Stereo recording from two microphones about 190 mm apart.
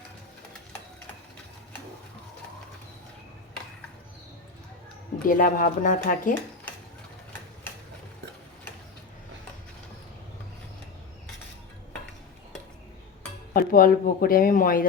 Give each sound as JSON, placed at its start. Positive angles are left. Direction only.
{"t": 5.2, "sound": "speech", "side_deg": 45}
{"t": 13.5, "sound": "speech", "side_deg": 45}